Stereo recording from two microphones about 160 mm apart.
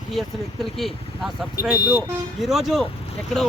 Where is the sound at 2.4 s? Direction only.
Centre (ahead or behind).